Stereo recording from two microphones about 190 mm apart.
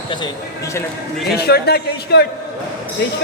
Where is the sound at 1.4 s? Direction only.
55° left (ahead or behind).